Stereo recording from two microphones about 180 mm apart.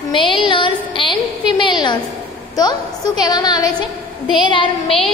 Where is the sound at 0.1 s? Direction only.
25° left (ahead or behind).